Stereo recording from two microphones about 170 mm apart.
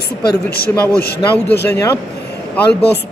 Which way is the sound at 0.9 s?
70° left (ahead or behind).